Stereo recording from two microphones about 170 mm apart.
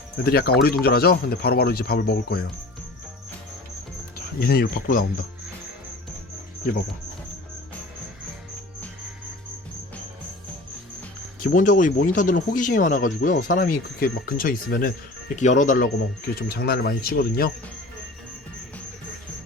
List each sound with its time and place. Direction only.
0.3 s speech: 65° left (ahead or behind)
4.4 s speech: 65° left (ahead or behind)
11.4 s speech: 50° left (ahead or behind)
13.1 s speech: 90° left
13.3 s speech: 50° left (ahead or behind)
15.4 s speech: 45° left (ahead or behind)
16.3 s speech: 65° left (ahead or behind)